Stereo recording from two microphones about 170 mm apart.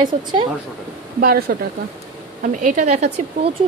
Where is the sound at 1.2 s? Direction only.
60° right (ahead or behind).